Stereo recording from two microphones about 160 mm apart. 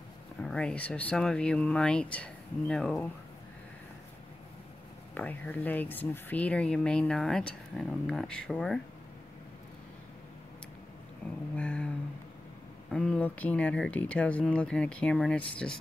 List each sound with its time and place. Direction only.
0.4 s speech: 5° left (ahead or behind)
5.1 s speech: 10° left (ahead or behind)
11.2 s a sound: 10° left (ahead or behind)
12.9 s speech: 5° left (ahead or behind)